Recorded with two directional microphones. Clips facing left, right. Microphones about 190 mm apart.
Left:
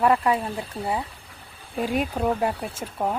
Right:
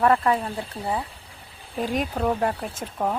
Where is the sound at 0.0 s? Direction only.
10° left (ahead or behind).